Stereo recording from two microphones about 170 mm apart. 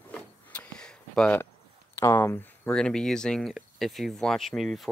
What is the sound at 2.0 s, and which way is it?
Speech, 15° left (ahead or behind).